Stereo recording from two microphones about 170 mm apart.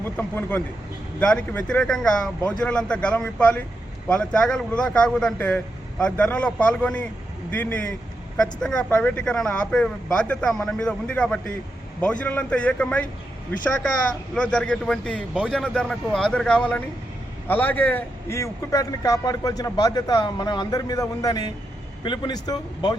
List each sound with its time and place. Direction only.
0.2 s speech: 10° left (ahead or behind)
14.3 s a man's voice: 5° left (ahead or behind); by 23.0 s 25° left (ahead or behind)